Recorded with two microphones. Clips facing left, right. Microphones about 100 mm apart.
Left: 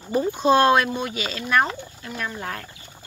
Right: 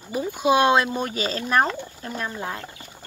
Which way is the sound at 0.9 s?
40° right (ahead or behind).